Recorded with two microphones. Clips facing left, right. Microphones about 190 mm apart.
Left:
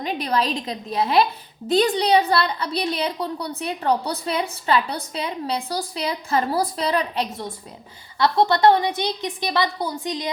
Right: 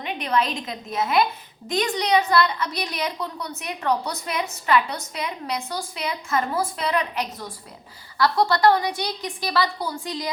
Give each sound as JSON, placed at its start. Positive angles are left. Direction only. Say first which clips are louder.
{"t": 0.0, "sound": "a woman's voice", "louder": "left 1 dB", "side_deg": 35}